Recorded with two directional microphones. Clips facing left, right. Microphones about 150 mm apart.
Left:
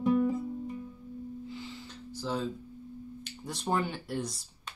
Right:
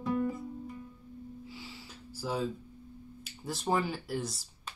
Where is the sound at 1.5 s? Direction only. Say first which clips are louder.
Left 5 dB; 5° right (ahead or behind).